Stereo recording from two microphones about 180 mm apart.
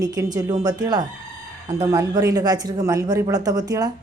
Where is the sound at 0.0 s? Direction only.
20° right (ahead or behind).